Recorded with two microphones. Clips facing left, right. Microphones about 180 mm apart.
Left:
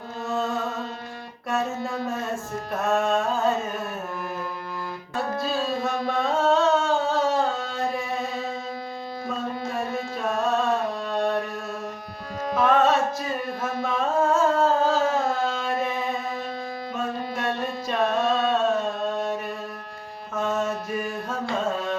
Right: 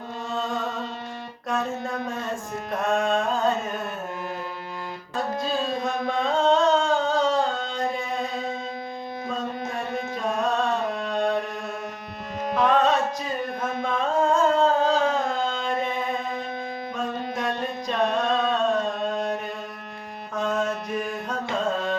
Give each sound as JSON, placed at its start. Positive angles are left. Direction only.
{"t": 1.5, "sound": "music", "side_deg": 0}
{"t": 6.1, "sound": "a sound", "side_deg": 5}
{"t": 10.2, "sound": "music", "side_deg": 0}
{"t": 12.5, "sound": "carnatic music", "side_deg": 5}
{"t": 17.8, "sound": "singing", "side_deg": 5}
{"t": 20.3, "sound": "mantra", "side_deg": 0}
{"t": 21.5, "sound": "carnatic music", "side_deg": 0}